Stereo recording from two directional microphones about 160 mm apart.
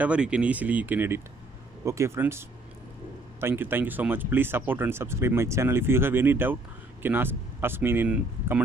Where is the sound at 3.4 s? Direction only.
15° right (ahead or behind).